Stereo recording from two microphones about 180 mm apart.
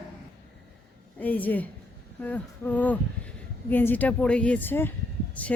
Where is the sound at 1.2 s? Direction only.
10° left (ahead or behind).